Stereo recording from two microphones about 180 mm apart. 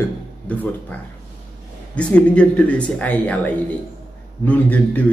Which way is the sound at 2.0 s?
5° left (ahead or behind).